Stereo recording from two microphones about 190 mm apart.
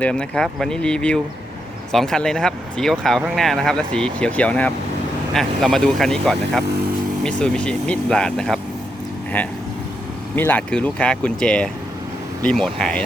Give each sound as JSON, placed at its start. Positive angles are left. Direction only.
{"t": 0.0, "sound": "speech", "side_deg": 5}
{"t": 10.3, "sound": "speech", "side_deg": 10}